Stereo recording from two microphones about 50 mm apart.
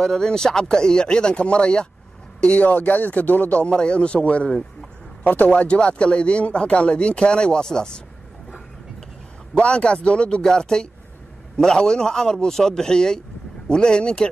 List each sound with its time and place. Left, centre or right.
0.0 s a man's voice: centre; by 5.5 s left
5.5 s speech: left
9.5 s speech: left